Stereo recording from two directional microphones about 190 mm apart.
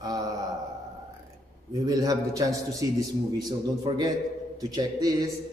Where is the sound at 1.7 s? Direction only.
20° right (ahead or behind).